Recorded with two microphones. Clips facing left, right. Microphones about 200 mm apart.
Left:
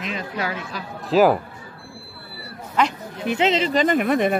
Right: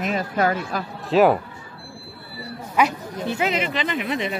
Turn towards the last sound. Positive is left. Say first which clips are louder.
# left 7 dB
turn(degrees=50)  # may be behind; listen again after turning